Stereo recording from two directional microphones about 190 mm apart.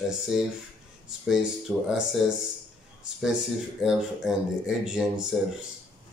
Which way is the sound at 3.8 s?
Centre (ahead or behind).